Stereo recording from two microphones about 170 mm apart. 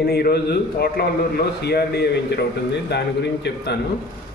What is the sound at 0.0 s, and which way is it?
A man's voice, 65° left (ahead or behind).